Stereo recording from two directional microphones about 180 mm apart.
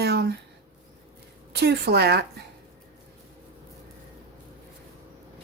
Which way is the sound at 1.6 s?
65° right (ahead or behind).